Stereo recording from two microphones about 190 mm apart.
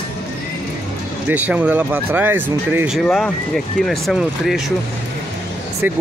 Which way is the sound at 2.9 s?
5° left (ahead or behind).